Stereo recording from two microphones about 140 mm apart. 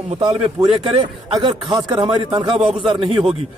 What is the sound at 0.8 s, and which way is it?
Speech, 40° right (ahead or behind).